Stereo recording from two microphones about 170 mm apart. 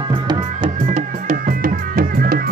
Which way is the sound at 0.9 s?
50° right (ahead or behind).